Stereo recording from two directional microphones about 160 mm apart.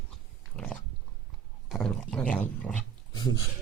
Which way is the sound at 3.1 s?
25° left (ahead or behind).